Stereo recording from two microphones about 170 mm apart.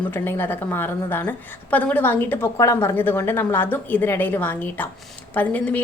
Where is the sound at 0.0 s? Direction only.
10° left (ahead or behind).